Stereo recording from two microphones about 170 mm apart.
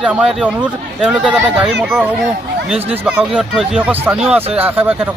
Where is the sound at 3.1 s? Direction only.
5° right (ahead or behind).